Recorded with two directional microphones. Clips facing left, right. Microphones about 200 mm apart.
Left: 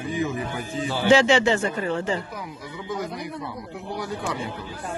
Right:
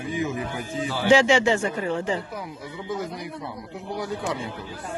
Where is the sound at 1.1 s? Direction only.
15° right (ahead or behind).